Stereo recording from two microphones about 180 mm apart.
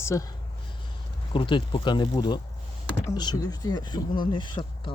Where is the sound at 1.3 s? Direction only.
25° left (ahead or behind).